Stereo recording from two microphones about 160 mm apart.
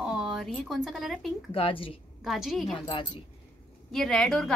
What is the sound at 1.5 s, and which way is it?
Speech, 35° left (ahead or behind).